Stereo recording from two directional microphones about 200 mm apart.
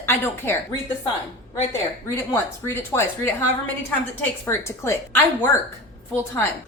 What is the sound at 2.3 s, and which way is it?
A woman's voice, 10° left (ahead or behind).